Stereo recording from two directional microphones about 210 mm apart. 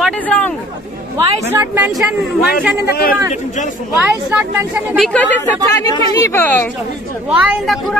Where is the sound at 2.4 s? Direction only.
45° left (ahead or behind).